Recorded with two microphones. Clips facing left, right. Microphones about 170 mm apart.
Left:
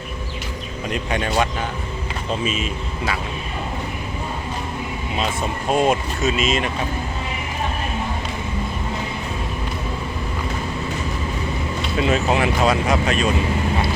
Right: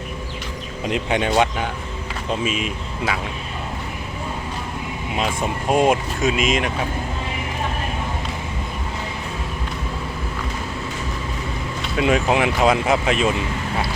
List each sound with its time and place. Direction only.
0.9 s speech: 20° right (ahead or behind)
5.1 s speech: 15° right (ahead or behind)
11.9 s speech: 10° right (ahead or behind)